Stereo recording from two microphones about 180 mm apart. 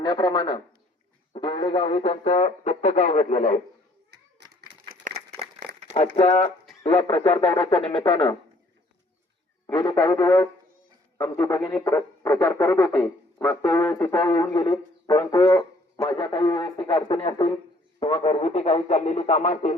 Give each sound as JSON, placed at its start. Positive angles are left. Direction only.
{"t": 0.0, "sound": "speech", "side_deg": 25}
{"t": 4.1, "sound": "children playing", "side_deg": -70}
{"t": 5.1, "sound": "a sound", "side_deg": -45}
{"t": 6.1, "sound": "speech", "side_deg": 35}
{"t": 9.6, "sound": "speech", "side_deg": 20}